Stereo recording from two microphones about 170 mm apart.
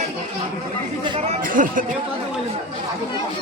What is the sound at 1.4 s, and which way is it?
Music, 55° right (ahead or behind).